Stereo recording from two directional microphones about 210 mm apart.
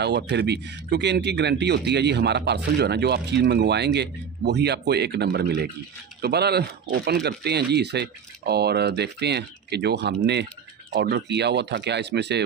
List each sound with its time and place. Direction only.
0.0 s speech: 55° right (ahead or behind)